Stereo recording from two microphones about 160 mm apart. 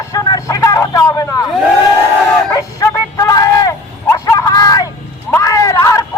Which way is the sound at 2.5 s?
20° left (ahead or behind).